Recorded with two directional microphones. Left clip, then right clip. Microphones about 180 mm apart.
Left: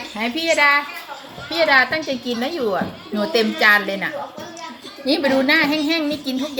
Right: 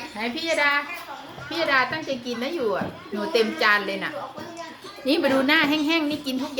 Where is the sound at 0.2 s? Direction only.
30° left (ahead or behind).